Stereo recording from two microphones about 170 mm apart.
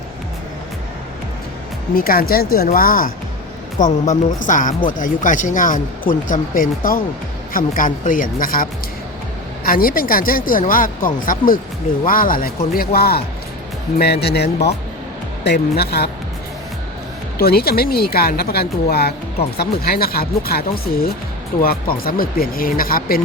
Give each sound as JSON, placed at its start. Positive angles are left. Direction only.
{"t": 2.0, "sound": "speech", "side_deg": 60}
{"t": 9.6, "sound": "speech", "side_deg": 60}
{"t": 17.3, "sound": "speech", "side_deg": 65}